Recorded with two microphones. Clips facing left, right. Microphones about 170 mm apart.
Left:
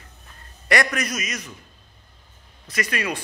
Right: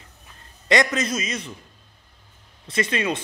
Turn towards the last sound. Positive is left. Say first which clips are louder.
# right 3 dB
turn(degrees=-25)  # may be behind; listen again after turning